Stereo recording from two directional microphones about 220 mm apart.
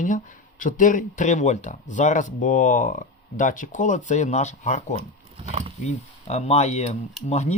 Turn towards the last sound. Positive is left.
turn(degrees=30)  # may be behind; listen again after turning